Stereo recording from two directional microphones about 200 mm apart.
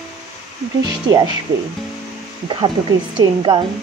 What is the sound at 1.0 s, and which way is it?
Speech, 20° right (ahead or behind).